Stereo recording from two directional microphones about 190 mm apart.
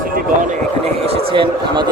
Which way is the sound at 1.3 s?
25° right (ahead or behind).